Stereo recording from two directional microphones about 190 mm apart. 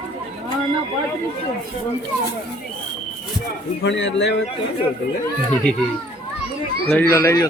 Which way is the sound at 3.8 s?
70° left (ahead or behind).